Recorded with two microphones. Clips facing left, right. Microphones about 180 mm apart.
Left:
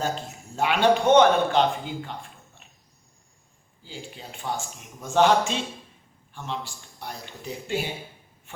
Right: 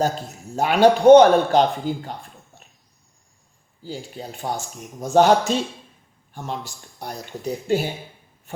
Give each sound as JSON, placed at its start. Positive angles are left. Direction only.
{"t": 0.5, "sound": "speech", "side_deg": -40}
{"t": 3.8, "sound": "speech", "side_deg": -40}